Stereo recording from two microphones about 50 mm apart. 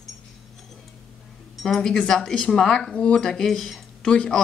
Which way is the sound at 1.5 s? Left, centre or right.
Centre.